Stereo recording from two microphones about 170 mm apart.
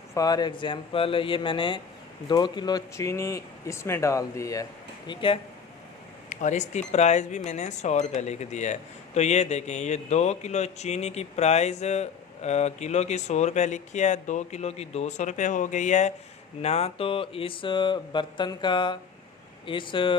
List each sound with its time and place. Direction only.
0.1 s speech: 20° left (ahead or behind)
5.0 s speech: 30° left (ahead or behind)
6.2 s speech: 45° left (ahead or behind); by 20.1 s 30° left (ahead or behind)